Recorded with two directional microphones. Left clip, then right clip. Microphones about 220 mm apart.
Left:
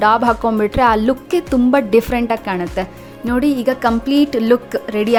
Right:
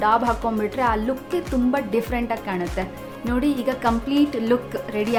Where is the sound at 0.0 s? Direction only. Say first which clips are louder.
Left 6 dB; 35° left (ahead or behind).